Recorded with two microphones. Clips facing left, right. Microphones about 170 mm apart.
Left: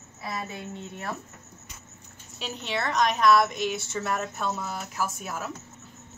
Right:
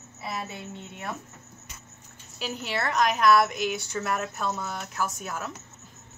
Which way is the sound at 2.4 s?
5° right (ahead or behind).